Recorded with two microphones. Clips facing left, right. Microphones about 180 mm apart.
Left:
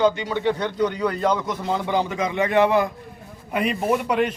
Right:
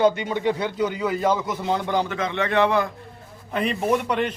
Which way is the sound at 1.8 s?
10° left (ahead or behind).